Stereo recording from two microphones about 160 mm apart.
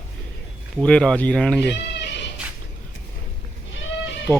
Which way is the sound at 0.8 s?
5° left (ahead or behind).